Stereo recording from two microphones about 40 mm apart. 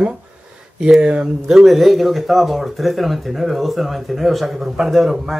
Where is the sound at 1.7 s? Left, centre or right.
Centre.